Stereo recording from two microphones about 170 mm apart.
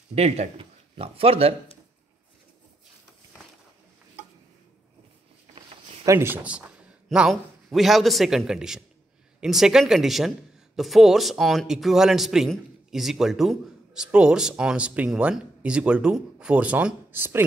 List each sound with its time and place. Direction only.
0.1 s speech: 40° right (ahead or behind)
6.0 s a man's voice: 15° right (ahead or behind)